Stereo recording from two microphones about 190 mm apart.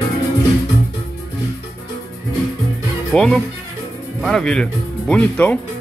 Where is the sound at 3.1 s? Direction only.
5° left (ahead or behind).